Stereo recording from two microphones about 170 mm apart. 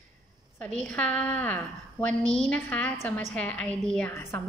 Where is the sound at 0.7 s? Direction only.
5° left (ahead or behind).